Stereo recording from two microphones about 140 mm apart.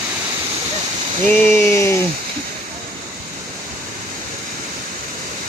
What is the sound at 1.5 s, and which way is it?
Speech, 10° left (ahead or behind).